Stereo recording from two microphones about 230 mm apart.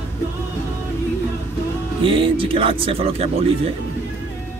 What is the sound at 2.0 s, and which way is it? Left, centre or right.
Speech, right.